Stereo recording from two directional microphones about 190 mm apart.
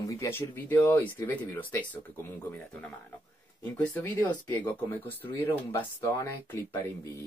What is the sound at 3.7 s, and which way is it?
Speech, 10° left (ahead or behind).